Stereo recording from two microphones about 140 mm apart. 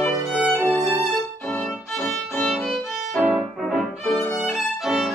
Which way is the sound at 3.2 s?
10° right (ahead or behind).